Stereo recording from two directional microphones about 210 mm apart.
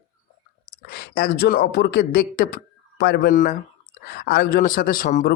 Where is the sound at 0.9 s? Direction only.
50° left (ahead or behind).